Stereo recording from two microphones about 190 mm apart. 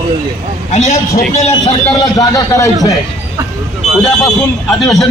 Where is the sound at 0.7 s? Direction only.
35° left (ahead or behind).